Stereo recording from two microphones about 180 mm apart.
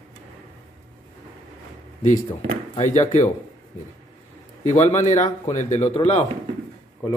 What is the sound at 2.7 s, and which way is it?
Speech, 40° left (ahead or behind).